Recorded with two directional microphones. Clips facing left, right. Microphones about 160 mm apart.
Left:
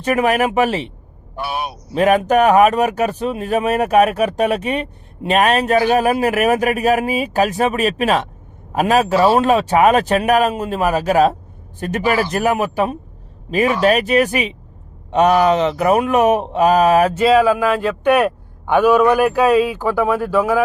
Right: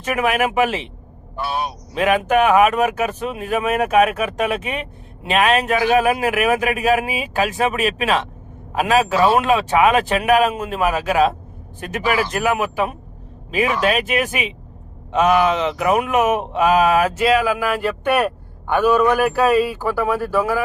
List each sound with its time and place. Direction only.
0.0 s speech: 35° left (ahead or behind)
1.4 s speech: 10° left (ahead or behind)
1.9 s speech: 40° left (ahead or behind)
18.0 s speech: 10° left (ahead or behind)
20.0 s speech: 5° right (ahead or behind)